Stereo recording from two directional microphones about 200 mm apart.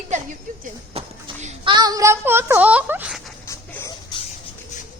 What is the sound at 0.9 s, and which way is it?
Children playing, 30° right (ahead or behind).